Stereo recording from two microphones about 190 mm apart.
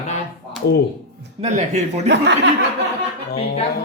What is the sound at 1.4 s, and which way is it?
Speech, 35° right (ahead or behind).